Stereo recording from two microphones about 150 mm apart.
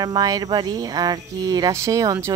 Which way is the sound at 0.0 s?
25° right (ahead or behind).